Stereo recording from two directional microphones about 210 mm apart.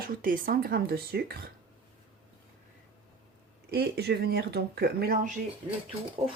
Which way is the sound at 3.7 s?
50° right (ahead or behind).